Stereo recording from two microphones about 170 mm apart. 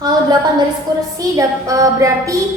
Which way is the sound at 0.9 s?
25° right (ahead or behind).